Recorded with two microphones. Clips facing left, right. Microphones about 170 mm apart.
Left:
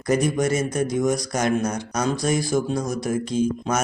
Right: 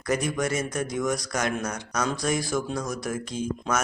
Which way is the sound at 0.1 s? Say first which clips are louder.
Left 5 dB; 35° left (ahead or behind).